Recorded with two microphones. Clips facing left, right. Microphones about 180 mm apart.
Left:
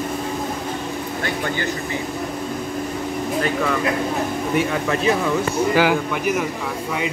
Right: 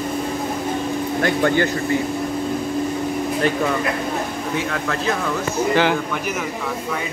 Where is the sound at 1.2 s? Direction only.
50° right (ahead or behind).